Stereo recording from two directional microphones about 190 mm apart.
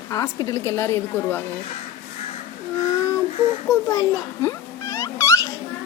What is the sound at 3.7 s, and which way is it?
Speech, 15° left (ahead or behind).